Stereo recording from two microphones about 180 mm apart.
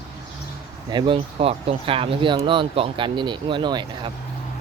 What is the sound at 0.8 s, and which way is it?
Speech, 25° right (ahead or behind).